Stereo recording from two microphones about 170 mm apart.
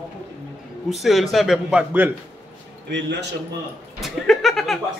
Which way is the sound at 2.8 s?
90° right.